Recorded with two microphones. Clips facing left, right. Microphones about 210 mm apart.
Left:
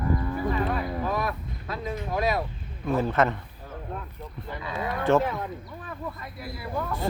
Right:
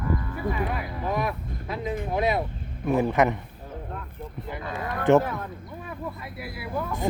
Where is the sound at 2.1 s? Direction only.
20° right (ahead or behind).